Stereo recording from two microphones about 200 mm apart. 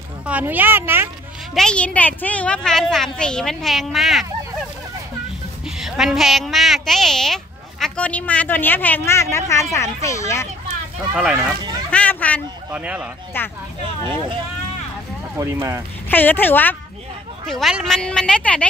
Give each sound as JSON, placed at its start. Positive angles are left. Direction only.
{"t": 0.3, "sound": "speech", "side_deg": -10}
{"t": 1.5, "sound": "a woman's voice", "side_deg": 5}
{"t": 5.8, "sound": "a woman's voice", "side_deg": 0}
{"t": 11.1, "sound": "a woman's voice", "side_deg": -5}
{"t": 11.9, "sound": "a sound", "side_deg": 5}
{"t": 12.7, "sound": "speech", "side_deg": -5}
{"t": 13.4, "sound": "speech", "side_deg": 10}
{"t": 15.3, "sound": "speech", "side_deg": -15}
{"t": 16.1, "sound": "a woman's voice", "side_deg": 10}